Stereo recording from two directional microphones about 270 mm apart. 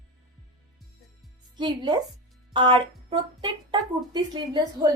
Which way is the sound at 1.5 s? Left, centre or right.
Centre.